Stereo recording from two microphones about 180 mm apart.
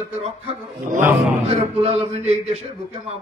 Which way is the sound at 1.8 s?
35° right (ahead or behind).